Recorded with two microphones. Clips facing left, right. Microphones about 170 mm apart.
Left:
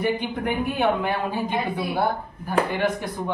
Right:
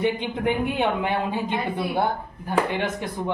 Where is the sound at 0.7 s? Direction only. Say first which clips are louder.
Left 1 dB; 20° right (ahead or behind).